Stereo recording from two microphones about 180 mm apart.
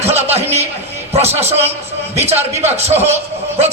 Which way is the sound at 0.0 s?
35° right (ahead or behind).